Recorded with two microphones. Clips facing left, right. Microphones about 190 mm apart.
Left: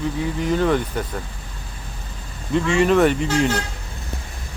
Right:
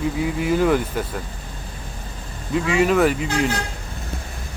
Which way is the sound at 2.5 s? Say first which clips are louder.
Left 1 dB; 5° right (ahead or behind).